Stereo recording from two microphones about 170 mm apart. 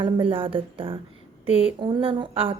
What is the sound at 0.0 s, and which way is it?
A woman's voice, 30° right (ahead or behind).